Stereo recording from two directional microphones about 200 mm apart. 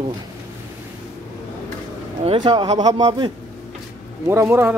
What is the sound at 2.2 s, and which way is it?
Speech, 25° right (ahead or behind).